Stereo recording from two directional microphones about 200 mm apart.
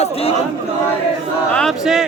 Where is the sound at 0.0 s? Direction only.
30° left (ahead or behind).